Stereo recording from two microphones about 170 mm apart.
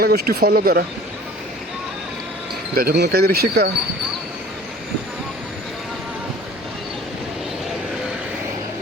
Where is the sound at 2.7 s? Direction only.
65° right (ahead or behind).